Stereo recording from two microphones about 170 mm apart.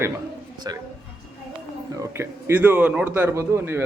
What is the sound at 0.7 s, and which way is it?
Speech, 25° right (ahead or behind).